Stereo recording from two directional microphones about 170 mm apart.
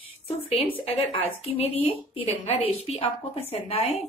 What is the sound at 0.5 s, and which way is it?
A woman's voice, 35° left (ahead or behind).